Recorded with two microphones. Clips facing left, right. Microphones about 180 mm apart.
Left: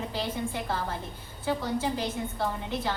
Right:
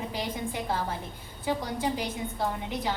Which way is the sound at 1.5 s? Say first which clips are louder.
Left 1 dB; 15° right (ahead or behind).